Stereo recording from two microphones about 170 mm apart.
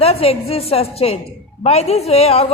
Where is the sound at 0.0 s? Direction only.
35° left (ahead or behind).